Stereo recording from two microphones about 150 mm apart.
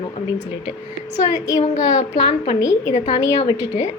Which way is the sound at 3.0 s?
40° left (ahead or behind).